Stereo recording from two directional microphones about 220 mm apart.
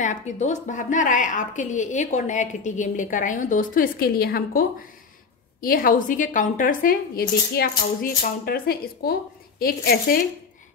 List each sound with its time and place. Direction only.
0.0 s a woman's voice: 35° left (ahead or behind)